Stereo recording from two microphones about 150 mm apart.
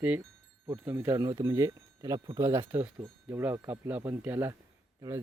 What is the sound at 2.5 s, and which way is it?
Speech, 15° right (ahead or behind).